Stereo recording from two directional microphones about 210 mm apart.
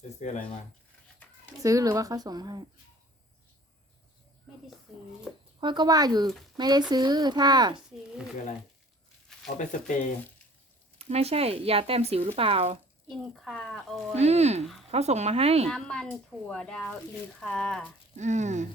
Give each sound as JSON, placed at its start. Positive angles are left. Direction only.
{"t": 0.2, "sound": "speech", "side_deg": 35}
{"t": 1.6, "sound": "speech", "side_deg": -15}
{"t": 4.9, "sound": "speech", "side_deg": 0}
{"t": 5.5, "sound": "speech", "side_deg": -20}
{"t": 10.9, "sound": "speech", "side_deg": -30}
{"t": 13.1, "sound": "speech", "side_deg": 0}
{"t": 14.2, "sound": "speech", "side_deg": -30}
{"t": 15.7, "sound": "speech", "side_deg": 5}
{"t": 18.2, "sound": "speech", "side_deg": -35}